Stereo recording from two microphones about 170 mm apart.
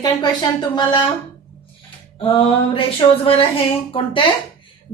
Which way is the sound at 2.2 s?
30° left (ahead or behind).